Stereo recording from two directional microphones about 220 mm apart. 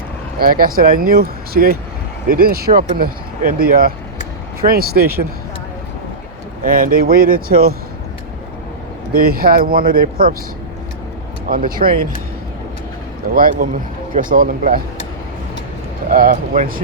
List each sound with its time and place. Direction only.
0.3 s speech: 40° right (ahead or behind)
6.8 s speech: 40° right (ahead or behind)
9.3 s speech: 40° right (ahead or behind)
11.4 s speech: 40° right (ahead or behind)
13.3 s speech: 40° right (ahead or behind)
16.0 s speech: 40° right (ahead or behind)